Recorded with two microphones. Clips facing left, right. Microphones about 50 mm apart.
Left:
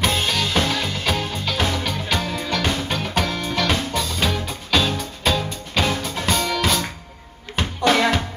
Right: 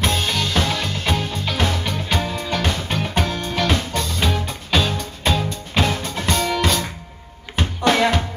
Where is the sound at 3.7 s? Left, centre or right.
Centre.